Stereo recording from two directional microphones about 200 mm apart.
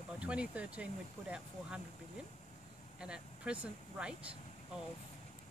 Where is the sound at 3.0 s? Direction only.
5° right (ahead or behind).